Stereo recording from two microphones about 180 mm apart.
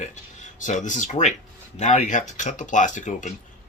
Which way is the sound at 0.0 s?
40° left (ahead or behind).